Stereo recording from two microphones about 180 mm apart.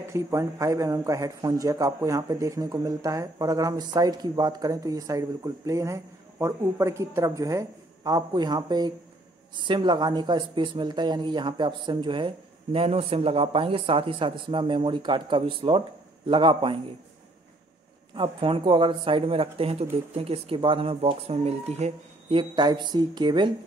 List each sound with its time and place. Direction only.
0.1 s a man's voice: 15° right (ahead or behind)
18.1 s speech: 30° right (ahead or behind)
22.4 s a man's voice: 25° right (ahead or behind)